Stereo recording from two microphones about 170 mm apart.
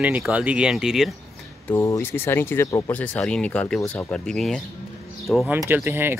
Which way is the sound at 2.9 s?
5° left (ahead or behind).